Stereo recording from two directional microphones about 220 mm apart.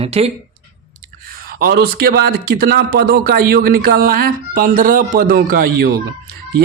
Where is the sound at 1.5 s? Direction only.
45° right (ahead or behind).